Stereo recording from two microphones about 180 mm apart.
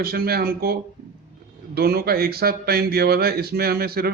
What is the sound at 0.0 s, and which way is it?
Speech, 60° right (ahead or behind).